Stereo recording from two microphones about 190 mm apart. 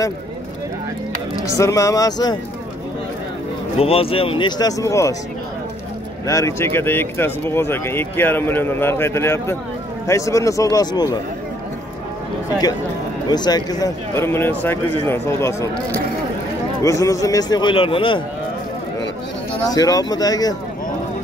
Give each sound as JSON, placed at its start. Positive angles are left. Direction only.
{"t": 1.4, "sound": "speech", "side_deg": 15}
{"t": 3.8, "sound": "a man's voice", "side_deg": 30}
{"t": 6.2, "sound": "speech", "side_deg": 15}
{"t": 13.3, "sound": "a man's voice", "side_deg": 20}
{"t": 19.7, "sound": "a man's voice", "side_deg": 20}